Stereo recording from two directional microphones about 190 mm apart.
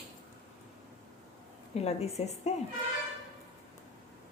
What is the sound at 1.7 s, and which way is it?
Speech, 35° left (ahead or behind).